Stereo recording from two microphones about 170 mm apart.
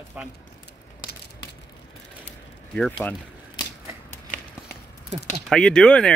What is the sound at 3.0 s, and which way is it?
Speech, 10° left (ahead or behind).